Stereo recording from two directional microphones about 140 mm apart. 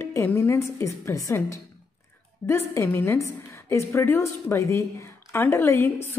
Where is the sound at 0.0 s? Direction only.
15° left (ahead or behind).